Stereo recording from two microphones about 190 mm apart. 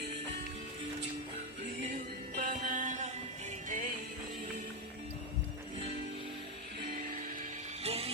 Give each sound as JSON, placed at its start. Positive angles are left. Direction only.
{"t": 1.8, "sound": "music", "side_deg": -45}
{"t": 6.8, "sound": "music", "side_deg": -40}
{"t": 7.9, "sound": "music", "side_deg": -30}